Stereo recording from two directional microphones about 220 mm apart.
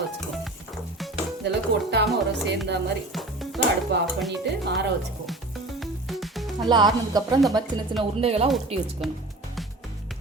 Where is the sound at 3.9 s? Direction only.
50° right (ahead or behind).